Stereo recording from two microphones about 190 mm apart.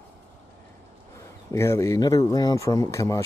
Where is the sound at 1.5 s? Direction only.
15° left (ahead or behind).